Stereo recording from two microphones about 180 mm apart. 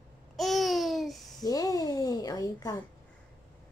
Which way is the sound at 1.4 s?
20° left (ahead or behind).